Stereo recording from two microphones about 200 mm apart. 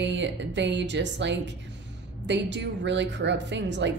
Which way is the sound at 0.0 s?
60° right (ahead or behind).